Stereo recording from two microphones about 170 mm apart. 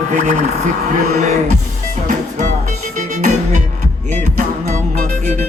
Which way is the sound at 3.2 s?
45° right (ahead or behind).